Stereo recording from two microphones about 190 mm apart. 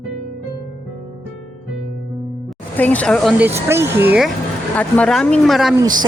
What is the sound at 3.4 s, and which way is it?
Speech, 15° right (ahead or behind).